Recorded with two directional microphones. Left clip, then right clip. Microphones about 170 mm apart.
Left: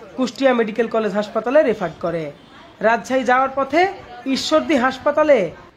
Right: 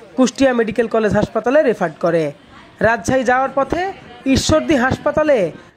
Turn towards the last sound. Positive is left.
turn(degrees=-40)  # may be behind; listen again after turning